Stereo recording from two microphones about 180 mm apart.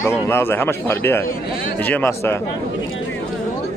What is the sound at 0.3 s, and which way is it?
A man's voice, 10° left (ahead or behind).